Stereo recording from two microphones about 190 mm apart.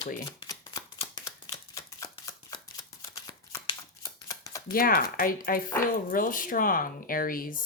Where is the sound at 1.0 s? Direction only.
20° left (ahead or behind).